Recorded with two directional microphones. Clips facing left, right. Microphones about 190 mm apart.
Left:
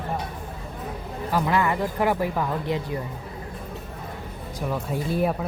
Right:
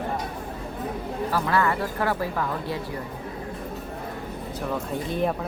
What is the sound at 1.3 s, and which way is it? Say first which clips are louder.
Speech: left 2 dB; 15° left (ahead or behind).